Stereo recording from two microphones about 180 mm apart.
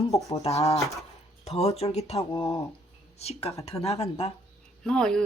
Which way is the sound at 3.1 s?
35° left (ahead or behind).